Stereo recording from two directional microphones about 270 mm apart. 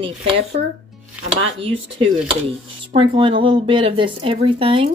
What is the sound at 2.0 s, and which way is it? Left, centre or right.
Speech, centre.